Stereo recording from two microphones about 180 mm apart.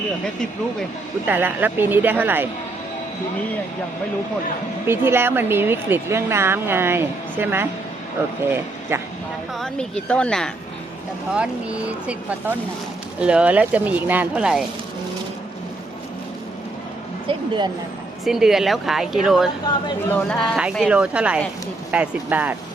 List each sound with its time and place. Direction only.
1.3 s speech: 10° right (ahead or behind)
4.9 s speech: 15° right (ahead or behind)
8.9 s speech: 15° right (ahead or behind)
9.6 s speech: 5° left (ahead or behind)
11.3 s speech: 5° right (ahead or behind)
17.2 s speech: 25° right (ahead or behind)
18.3 s speech: 5° right (ahead or behind)